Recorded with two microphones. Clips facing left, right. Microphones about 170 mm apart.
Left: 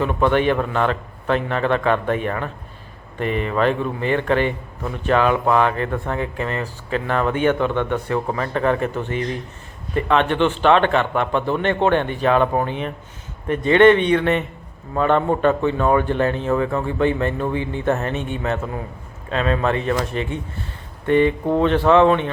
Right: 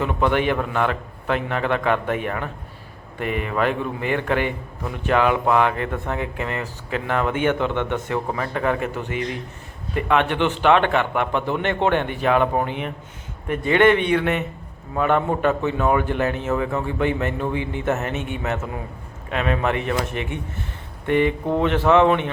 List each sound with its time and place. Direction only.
0.0 s speech: 15° right (ahead or behind)